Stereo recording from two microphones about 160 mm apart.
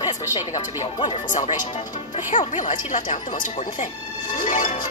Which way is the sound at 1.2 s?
50° left (ahead or behind).